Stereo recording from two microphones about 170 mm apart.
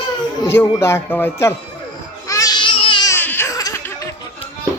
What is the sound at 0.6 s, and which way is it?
Speech, 20° left (ahead or behind).